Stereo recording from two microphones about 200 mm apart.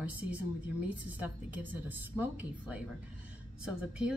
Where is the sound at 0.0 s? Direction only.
5° right (ahead or behind).